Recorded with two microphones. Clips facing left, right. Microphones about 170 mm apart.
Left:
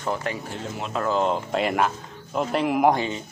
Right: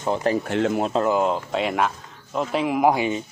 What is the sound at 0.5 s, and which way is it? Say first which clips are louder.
Speech: right 11 dB; 75° right (ahead or behind).